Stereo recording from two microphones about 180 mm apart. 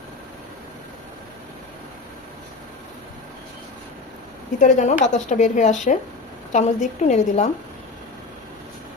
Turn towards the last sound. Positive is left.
turn(degrees=40)  # may be behind; listen again after turning